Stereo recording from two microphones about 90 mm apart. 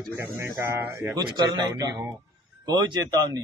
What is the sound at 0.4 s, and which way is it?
Mantra, 30° right (ahead or behind).